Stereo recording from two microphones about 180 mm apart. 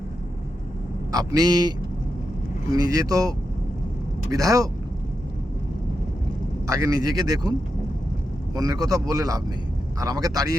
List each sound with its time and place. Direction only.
1.1 s speech: 20° right (ahead or behind)
2.7 s speech: 20° right (ahead or behind)
6.7 s speech: 20° right (ahead or behind)
8.5 s speech: 20° right (ahead or behind)